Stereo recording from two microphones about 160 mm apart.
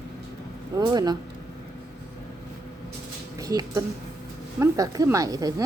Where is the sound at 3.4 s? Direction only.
20° right (ahead or behind).